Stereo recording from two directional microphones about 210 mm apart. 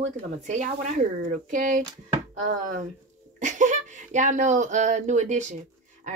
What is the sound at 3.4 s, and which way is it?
Speech, 35° right (ahead or behind).